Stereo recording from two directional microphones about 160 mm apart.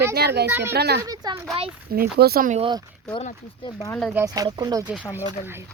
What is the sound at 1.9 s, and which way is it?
Speech, 75° right (ahead or behind).